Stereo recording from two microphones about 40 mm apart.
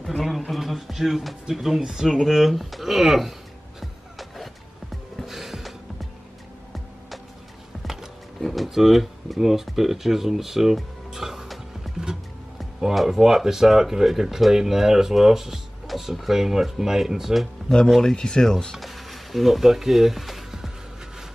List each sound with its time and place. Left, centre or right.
0.0 s speech: centre
3.8 s vehicle: centre
5.2 s music: centre
7.8 s music: centre
8.4 s a sound: centre
8.6 s speech: centre
18.1 s speech: centre
18.8 s music: centre